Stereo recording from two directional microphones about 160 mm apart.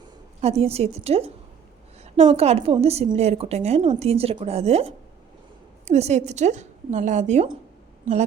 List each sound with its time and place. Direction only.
0.4 s a woman's voice: 40° right (ahead or behind)